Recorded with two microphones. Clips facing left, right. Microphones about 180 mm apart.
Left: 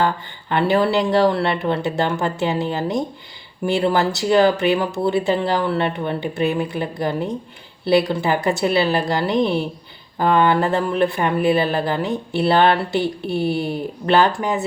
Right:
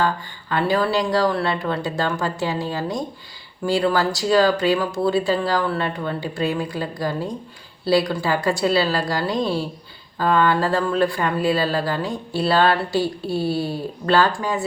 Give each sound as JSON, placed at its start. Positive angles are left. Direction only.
{"t": 0.0, "sound": "speech", "side_deg": 25}